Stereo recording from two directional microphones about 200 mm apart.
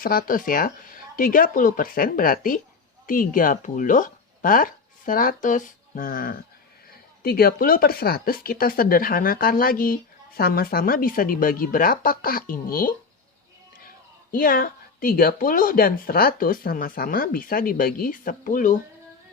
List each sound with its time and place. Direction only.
0.0 s speech: 45° left (ahead or behind)
14.3 s speech: 45° left (ahead or behind)